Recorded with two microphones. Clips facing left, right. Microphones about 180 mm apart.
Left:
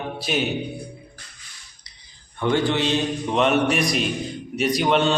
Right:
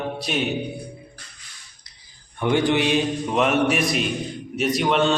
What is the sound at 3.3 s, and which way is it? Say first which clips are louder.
A man's voice: left 1 dB; centre (ahead or behind).